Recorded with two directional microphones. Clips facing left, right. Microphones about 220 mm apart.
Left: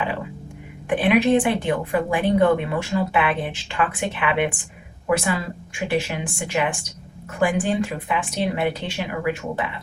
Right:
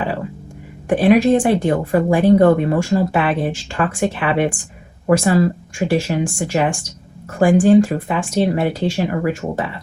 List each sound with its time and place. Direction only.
0.9 s a woman's voice: 40° right (ahead or behind)